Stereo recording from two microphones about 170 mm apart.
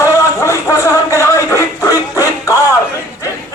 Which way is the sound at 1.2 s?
15° left (ahead or behind).